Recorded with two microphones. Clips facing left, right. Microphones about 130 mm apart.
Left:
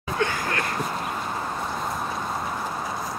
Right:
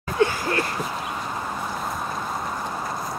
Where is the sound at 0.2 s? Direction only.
30° right (ahead or behind).